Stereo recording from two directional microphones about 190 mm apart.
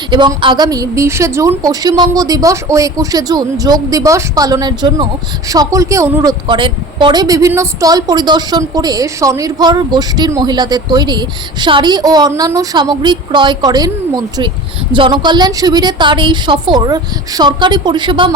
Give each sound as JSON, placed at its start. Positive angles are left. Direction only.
{"t": 0.1, "sound": "a woman's voice", "side_deg": -25}
{"t": 14.9, "sound": "a woman's voice", "side_deg": -25}